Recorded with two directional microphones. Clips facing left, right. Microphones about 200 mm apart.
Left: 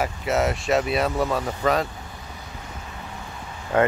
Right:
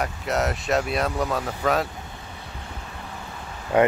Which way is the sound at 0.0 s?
Centre (ahead or behind).